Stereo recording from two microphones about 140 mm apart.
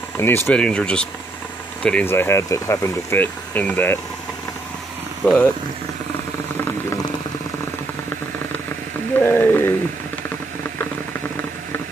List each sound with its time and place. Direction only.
0.2 s speech: 15° left (ahead or behind)
5.2 s speech: centre (ahead or behind)
9.2 s a sound: 15° left (ahead or behind)
10.6 s boiling: 15° left (ahead or behind)